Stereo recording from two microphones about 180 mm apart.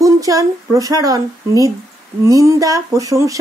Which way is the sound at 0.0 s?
20° right (ahead or behind).